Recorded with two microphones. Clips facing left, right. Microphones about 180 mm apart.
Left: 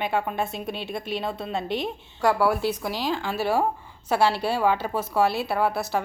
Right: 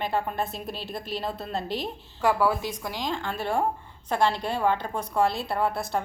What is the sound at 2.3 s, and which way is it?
A woman's voice, 10° left (ahead or behind).